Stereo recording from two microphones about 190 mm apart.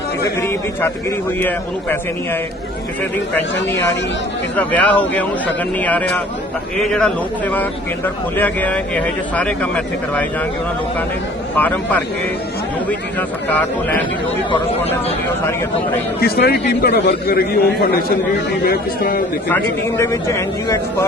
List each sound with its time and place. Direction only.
0.3 s a man's voice: 10° left (ahead or behind)
4.5 s a man's voice: 5° left (ahead or behind)
11.5 s a man's voice: 10° left (ahead or behind)
16.2 s a man's voice: 55° left (ahead or behind)
19.5 s a man's voice: 15° left (ahead or behind)